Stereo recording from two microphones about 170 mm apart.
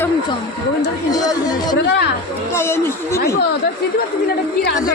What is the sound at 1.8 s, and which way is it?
Speech, 90° left.